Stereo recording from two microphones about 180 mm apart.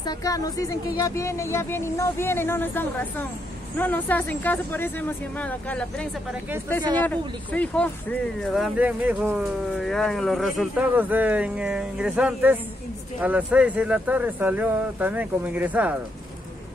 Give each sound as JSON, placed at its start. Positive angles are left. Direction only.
{"t": 0.0, "sound": "speech", "side_deg": 20}